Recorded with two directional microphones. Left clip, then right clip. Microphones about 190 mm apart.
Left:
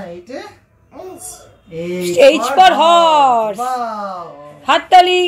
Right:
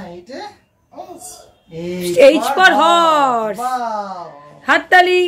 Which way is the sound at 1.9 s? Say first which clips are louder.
Even; 25° right (ahead or behind).